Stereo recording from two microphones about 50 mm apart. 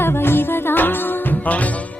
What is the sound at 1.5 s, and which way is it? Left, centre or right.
Music, left.